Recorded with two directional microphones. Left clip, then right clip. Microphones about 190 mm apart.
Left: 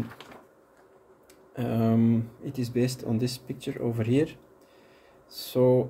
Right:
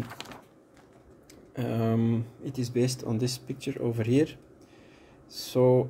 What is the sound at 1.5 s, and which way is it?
Speech, 10° right (ahead or behind).